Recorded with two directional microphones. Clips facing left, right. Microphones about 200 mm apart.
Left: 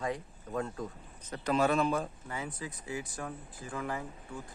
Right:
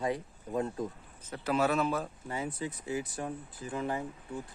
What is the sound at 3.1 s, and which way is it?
Speech, 20° right (ahead or behind).